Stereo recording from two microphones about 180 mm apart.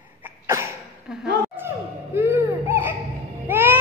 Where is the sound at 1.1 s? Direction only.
5° right (ahead or behind).